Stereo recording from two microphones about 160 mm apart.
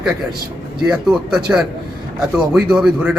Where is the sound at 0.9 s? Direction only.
5° right (ahead or behind).